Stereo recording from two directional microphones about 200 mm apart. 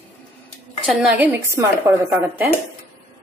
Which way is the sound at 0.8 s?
5° right (ahead or behind).